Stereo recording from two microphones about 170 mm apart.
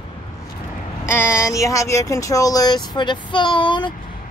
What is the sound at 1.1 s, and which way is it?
Speech, 15° left (ahead or behind).